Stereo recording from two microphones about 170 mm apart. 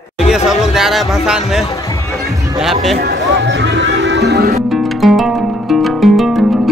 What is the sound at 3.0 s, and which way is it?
Music, 85° right.